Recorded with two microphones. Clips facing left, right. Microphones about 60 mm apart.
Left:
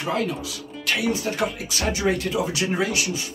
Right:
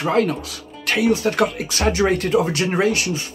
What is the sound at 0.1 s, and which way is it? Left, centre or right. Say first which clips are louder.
Speech: right 5 dB; right.